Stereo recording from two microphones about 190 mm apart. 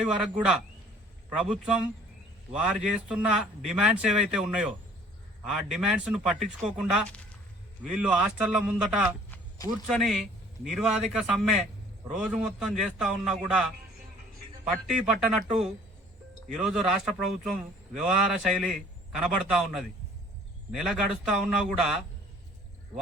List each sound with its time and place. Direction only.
0.0 s speech: 5° right (ahead or behind)